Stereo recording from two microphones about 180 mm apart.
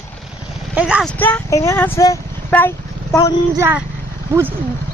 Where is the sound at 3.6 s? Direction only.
10° right (ahead or behind).